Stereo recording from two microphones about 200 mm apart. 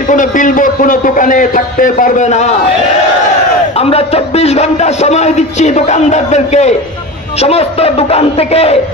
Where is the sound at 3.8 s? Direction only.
30° left (ahead or behind).